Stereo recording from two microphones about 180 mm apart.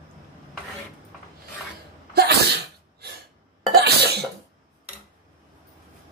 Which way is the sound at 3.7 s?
60° right (ahead or behind).